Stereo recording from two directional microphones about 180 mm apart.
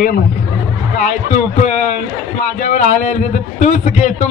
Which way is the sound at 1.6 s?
40° left (ahead or behind).